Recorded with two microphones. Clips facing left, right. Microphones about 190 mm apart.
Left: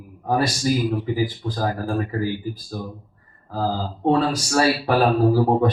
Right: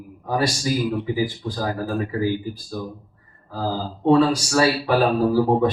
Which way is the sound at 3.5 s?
50° left (ahead or behind).